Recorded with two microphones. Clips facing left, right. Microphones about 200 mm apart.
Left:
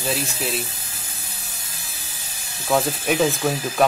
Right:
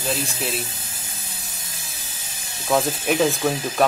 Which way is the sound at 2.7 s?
Centre (ahead or behind).